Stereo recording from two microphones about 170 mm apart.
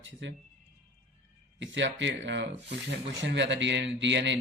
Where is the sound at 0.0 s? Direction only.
90° right.